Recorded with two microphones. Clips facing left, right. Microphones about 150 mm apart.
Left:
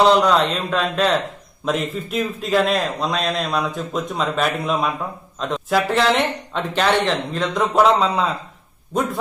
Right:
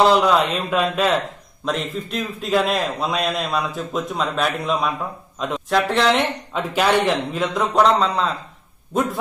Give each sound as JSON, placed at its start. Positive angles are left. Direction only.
{"t": 0.0, "sound": "a man's voice", "side_deg": -5}